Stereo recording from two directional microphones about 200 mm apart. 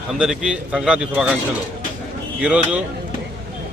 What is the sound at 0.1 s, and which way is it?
A man's voice, 5° right (ahead or behind).